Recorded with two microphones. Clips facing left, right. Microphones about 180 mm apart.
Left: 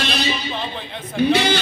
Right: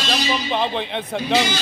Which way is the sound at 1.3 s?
60° left (ahead or behind).